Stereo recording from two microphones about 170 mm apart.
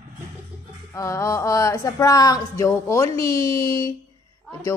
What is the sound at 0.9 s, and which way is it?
Speech, 20° left (ahead or behind).